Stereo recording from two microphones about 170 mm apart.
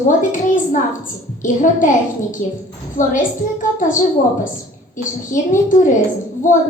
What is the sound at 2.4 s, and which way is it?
Speech, 55° left (ahead or behind).